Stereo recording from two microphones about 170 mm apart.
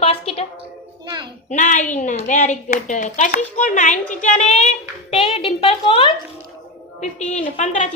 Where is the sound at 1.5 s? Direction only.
45° left (ahead or behind).